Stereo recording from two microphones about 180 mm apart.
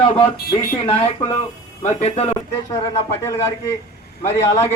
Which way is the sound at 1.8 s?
35° left (ahead or behind).